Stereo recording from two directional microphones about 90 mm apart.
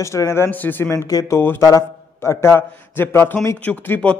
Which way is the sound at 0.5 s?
20° left (ahead or behind).